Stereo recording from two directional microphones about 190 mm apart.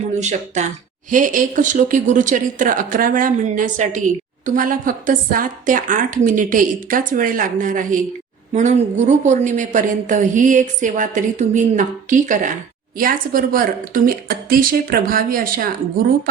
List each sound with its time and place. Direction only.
0.1 s a woman's voice: 40° right (ahead or behind)